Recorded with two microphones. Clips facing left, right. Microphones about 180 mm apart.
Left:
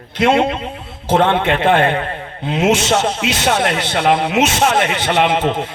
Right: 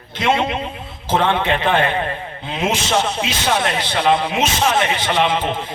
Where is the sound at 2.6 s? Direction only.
70° left (ahead or behind).